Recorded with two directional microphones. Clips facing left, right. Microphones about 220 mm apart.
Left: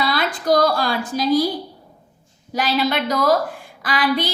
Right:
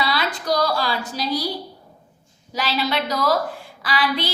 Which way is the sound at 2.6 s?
50° left (ahead or behind).